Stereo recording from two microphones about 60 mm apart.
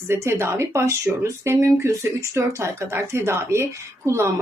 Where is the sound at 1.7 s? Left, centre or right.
Right.